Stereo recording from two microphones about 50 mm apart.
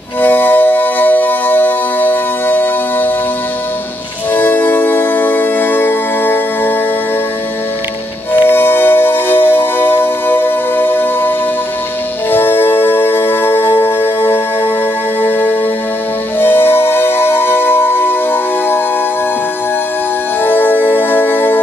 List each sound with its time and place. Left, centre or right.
0.2 s music: left
4.3 s music: left
8.3 s music: left
20.4 s music: left